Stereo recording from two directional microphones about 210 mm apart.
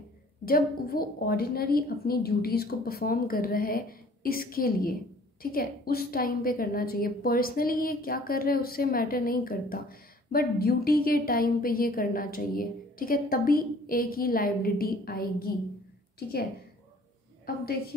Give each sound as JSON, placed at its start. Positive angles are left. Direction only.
{"t": 0.5, "sound": "a woman's voice", "side_deg": 45}